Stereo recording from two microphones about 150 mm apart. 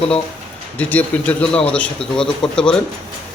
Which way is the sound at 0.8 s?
10° left (ahead or behind).